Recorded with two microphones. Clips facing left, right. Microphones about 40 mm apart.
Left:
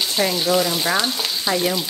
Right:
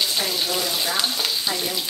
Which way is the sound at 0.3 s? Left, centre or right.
Centre.